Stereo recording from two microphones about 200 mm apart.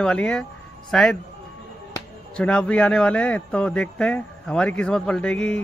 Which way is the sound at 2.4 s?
5° left (ahead or behind).